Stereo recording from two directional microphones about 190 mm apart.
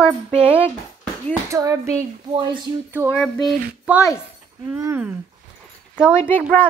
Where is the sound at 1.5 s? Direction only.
15° right (ahead or behind).